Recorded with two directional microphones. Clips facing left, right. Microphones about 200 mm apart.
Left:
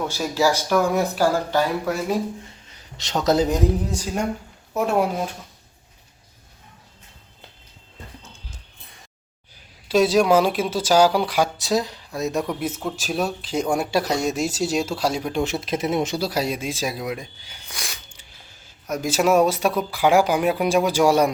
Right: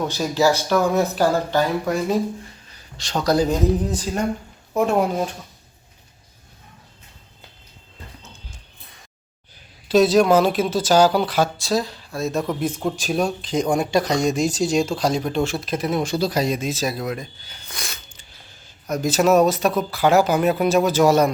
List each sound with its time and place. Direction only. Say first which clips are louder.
0.1 s speech: right 2 dB; 10° left (ahead or behind)
2.4 s a sound: right 2 dB; 20° left (ahead or behind)
3.2 s speech: right 1 dB; 20° left (ahead or behind)
9.9 s speech: right 2 dB; 10° left (ahead or behind)
12.5 s speech: right 3 dB; 5° left (ahead or behind)
15.5 s speech: even; 25° left (ahead or behind)
16.1 s speech: right 3 dB; 10° left (ahead or behind)